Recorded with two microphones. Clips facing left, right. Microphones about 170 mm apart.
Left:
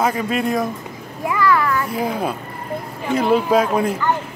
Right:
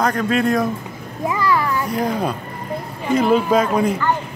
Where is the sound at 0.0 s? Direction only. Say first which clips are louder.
Right 2 dB; 5° left (ahead or behind).